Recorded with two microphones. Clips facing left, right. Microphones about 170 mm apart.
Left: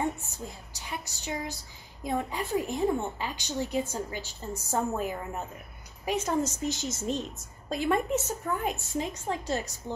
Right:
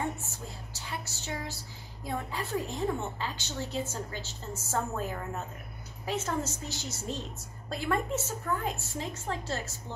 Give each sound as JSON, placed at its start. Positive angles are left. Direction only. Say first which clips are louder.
{"t": 0.2, "sound": "a woman's voice", "louder": "left 2 dB", "side_deg": 15}